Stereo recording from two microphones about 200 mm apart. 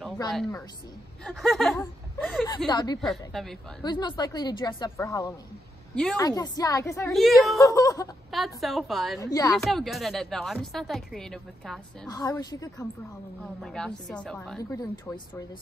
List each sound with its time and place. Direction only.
1.2 s speech: centre (ahead or behind)
2.7 s a woman's voice: 20° left (ahead or behind)
3.0 s speech: centre (ahead or behind)
3.8 s a woman's voice: 20° left (ahead or behind)
7.1 s speech: centre (ahead or behind)
7.5 s a woman's voice: 15° left (ahead or behind)
8.3 s speech: centre (ahead or behind)
9.2 s a woman's voice: 15° left (ahead or behind)
9.7 s speech: centre (ahead or behind)
12.1 s a woman's voice: 20° left (ahead or behind)
13.6 s speech: 5° left (ahead or behind)
14.6 s a woman's voice: 15° left (ahead or behind)